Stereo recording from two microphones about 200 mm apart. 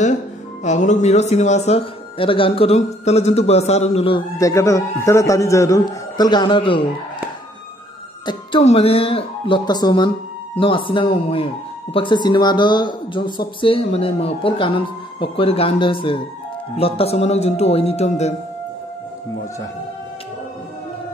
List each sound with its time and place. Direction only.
0.7 s speech: 35° left (ahead or behind)
4.4 s a man's voice: 15° left (ahead or behind)
8.3 s speech: 25° left (ahead or behind)